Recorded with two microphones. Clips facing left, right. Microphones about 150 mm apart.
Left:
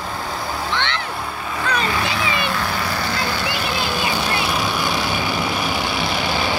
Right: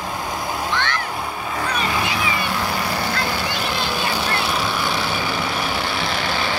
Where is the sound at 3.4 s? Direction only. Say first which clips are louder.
Left 1 dB; 5° left (ahead or behind).